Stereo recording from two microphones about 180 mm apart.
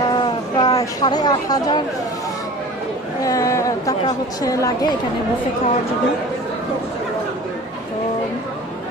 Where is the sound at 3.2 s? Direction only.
20° left (ahead or behind).